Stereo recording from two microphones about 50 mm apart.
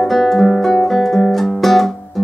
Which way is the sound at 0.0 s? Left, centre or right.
Centre.